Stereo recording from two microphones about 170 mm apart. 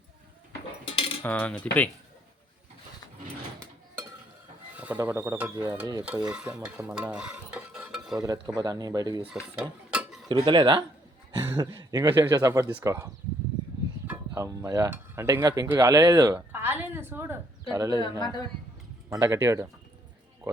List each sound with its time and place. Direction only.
0.9 s cutlery: 35° left (ahead or behind)
1.2 s cutlery: 10° left (ahead or behind)
4.8 s a sound: 10° right (ahead or behind)
5.8 s cutlery: 25° right (ahead or behind)
6.2 s stir: 5° right (ahead or behind)
8.1 s cutlery: 20° right (ahead or behind)
9.2 s mechanisms: 5° right (ahead or behind)
10.2 s cutlery: 25° right (ahead or behind)
11.3 s speech: 20° right (ahead or behind)
12.2 s cutlery: 20° right (ahead or behind)
12.8 s a sound: 20° right (ahead or behind)
14.1 s cutlery: 20° right (ahead or behind)
18.2 s speech: 25° left (ahead or behind)
19.1 s a sound: 20° right (ahead or behind)